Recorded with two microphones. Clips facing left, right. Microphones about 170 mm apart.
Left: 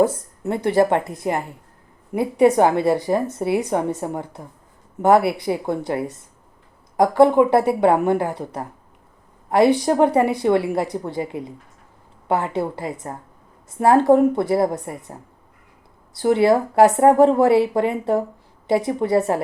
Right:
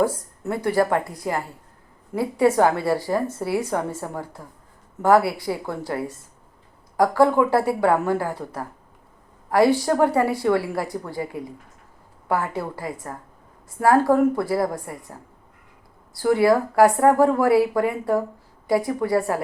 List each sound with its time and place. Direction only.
0.0 s a woman's voice: 20° left (ahead or behind)